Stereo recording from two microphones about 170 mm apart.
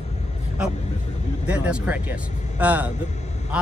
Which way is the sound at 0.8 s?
40° left (ahead or behind).